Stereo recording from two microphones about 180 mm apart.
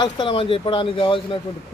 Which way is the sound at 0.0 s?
25° left (ahead or behind).